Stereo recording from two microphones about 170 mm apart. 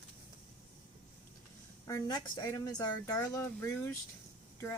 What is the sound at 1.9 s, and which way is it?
A woman's voice, 25° left (ahead or behind).